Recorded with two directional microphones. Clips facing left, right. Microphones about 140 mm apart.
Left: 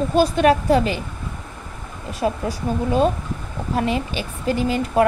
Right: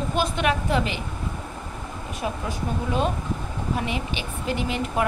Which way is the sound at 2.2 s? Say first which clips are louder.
Left 7 dB; 35° left (ahead or behind).